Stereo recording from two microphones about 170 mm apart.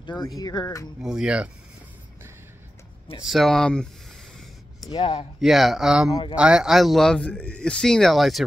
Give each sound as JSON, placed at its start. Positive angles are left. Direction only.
{"t": 0.0, "sound": "speech", "side_deg": 25}
{"t": 1.0, "sound": "speech", "side_deg": -5}
{"t": 3.3, "sound": "speech", "side_deg": 0}
{"t": 4.8, "sound": "speech", "side_deg": 25}
{"t": 5.4, "sound": "speech", "side_deg": 0}